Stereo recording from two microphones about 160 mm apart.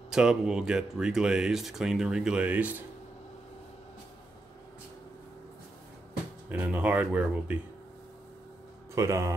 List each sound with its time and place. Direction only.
0.1 s speech: 5° right (ahead or behind)
6.5 s speech: 10° right (ahead or behind)
8.9 s speech: 20° right (ahead or behind)